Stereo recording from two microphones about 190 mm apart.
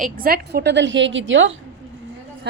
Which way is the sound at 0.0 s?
50° right (ahead or behind).